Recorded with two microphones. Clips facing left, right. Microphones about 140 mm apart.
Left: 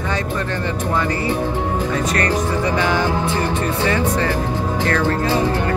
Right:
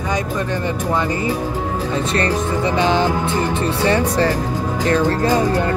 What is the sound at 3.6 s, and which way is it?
Speech, 30° right (ahead or behind).